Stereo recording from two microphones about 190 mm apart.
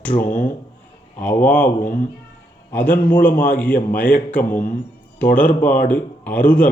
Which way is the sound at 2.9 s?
10° left (ahead or behind).